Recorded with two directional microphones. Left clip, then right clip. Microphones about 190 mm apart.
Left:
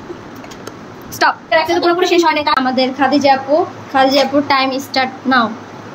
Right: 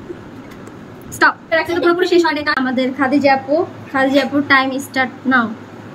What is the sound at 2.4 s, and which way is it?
Speech, 25° right (ahead or behind).